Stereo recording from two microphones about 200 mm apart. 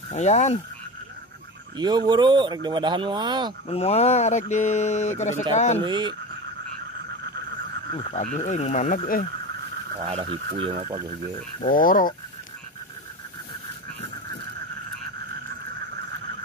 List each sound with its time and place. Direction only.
0.1 s speech: 35° left (ahead or behind)
1.8 s speech: 20° right (ahead or behind)
3.6 s speech: 30° left (ahead or behind)
5.9 s speech: 20° right (ahead or behind)
7.9 s speech: 35° left (ahead or behind)
9.9 s speech: 30° right (ahead or behind)
11.6 s speech: 45° left (ahead or behind)